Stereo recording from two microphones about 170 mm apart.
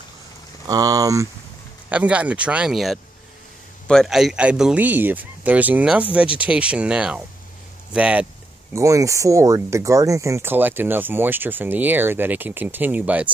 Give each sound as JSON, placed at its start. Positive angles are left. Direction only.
{"t": 0.7, "sound": "speech", "side_deg": -20}
{"t": 1.9, "sound": "speech", "side_deg": -5}
{"t": 8.7, "sound": "speech", "side_deg": -20}